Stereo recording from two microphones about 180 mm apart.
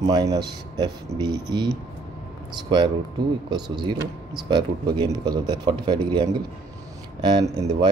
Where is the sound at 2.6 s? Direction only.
25° right (ahead or behind).